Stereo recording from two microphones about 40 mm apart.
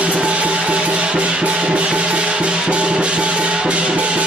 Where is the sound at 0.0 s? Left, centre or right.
Right.